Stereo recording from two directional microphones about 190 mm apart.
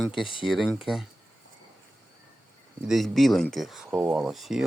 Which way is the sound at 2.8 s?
Centre (ahead or behind).